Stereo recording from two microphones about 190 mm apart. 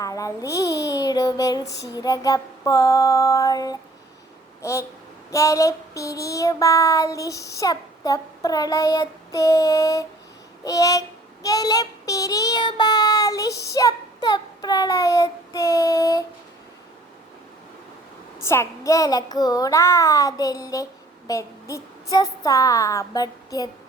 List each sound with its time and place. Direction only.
0.0 s a child's voice: 15° left (ahead or behind)
2.0 s child singing: 20° left (ahead or behind)
13.5 s speech: 60° left (ahead or behind)
13.7 s child singing: 20° left (ahead or behind)
18.4 s child singing: 15° left (ahead or behind)
21.2 s a woman's voice: 15° left (ahead or behind)